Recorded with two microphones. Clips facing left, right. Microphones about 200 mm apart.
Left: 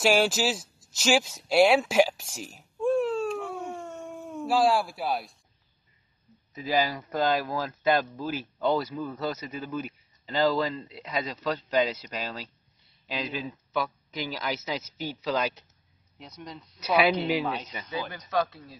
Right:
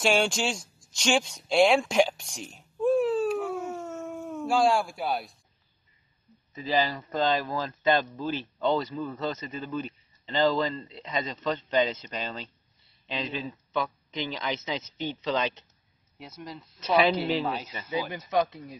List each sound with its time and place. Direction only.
0.0 s a sound: 5° left (ahead or behind)
6.5 s speech: 10° left (ahead or behind)
16.8 s speech: 10° left (ahead or behind)
17.5 s speech: 5° right (ahead or behind)
18.3 s speech: 15° right (ahead or behind)